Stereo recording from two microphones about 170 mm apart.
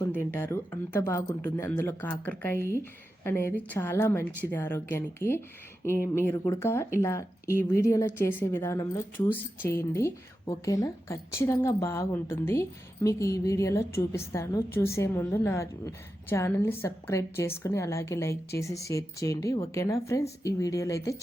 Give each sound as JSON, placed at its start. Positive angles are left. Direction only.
{"t": 0.0, "sound": "speech", "side_deg": 15}